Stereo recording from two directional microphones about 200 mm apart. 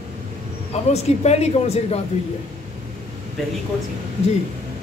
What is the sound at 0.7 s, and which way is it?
Speech, 35° left (ahead or behind).